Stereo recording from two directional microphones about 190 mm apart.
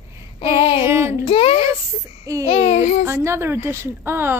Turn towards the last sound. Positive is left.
turn(degrees=-10)  # may be behind; listen again after turning